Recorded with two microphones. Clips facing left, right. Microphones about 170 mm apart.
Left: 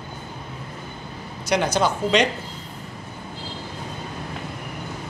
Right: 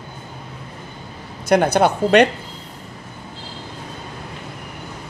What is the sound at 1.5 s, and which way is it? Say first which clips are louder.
Speech: right 6 dB; 55° right (ahead or behind).